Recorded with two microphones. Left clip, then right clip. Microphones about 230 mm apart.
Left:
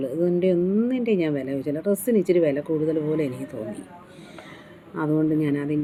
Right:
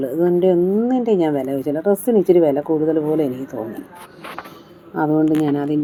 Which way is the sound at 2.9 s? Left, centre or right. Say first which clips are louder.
Right 6 dB; right.